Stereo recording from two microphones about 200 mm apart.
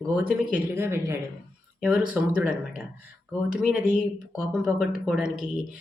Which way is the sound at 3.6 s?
5° right (ahead or behind).